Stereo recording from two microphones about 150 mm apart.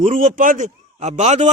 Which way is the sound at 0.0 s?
60° right (ahead or behind).